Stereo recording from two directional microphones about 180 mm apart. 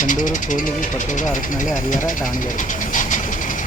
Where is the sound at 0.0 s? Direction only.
45° left (ahead or behind).